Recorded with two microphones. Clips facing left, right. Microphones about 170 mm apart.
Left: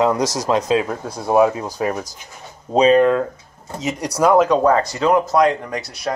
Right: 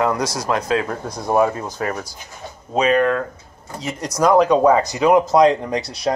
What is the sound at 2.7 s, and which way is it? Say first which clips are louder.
A man's voice: left 4 dB; 30° left (ahead or behind).